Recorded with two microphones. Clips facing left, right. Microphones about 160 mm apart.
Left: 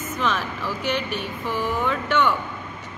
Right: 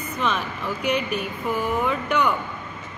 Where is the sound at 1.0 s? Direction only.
Centre (ahead or behind).